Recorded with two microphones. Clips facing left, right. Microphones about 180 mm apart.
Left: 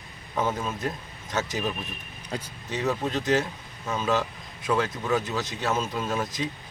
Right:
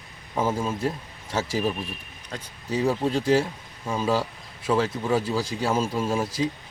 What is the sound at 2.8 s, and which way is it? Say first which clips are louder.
Speech: right 3 dB; 10° right (ahead or behind).